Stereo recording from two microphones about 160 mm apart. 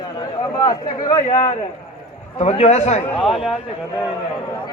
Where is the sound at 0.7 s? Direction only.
25° left (ahead or behind).